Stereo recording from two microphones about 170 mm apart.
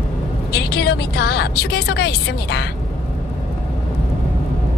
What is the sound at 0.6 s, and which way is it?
A woman's voice, 75° left (ahead or behind).